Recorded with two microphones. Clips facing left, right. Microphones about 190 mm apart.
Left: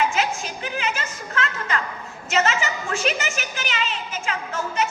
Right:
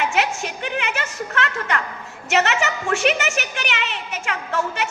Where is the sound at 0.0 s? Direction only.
65° right (ahead or behind).